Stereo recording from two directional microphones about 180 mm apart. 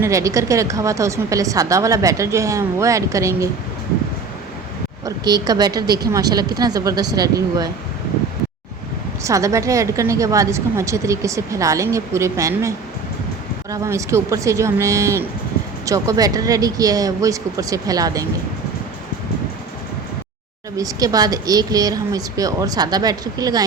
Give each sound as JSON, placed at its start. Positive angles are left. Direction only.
{"t": 0.0, "sound": "a woman's voice", "side_deg": -15}
{"t": 5.0, "sound": "speech", "side_deg": -20}
{"t": 9.2, "sound": "a woman's voice", "side_deg": -15}
{"t": 20.7, "sound": "speech", "side_deg": -20}